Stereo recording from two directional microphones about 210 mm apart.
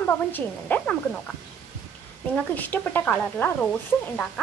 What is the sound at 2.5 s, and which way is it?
Speech, 10° left (ahead or behind).